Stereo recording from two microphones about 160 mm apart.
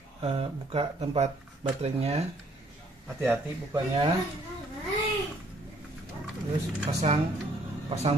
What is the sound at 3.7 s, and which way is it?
Speech, 30° right (ahead or behind).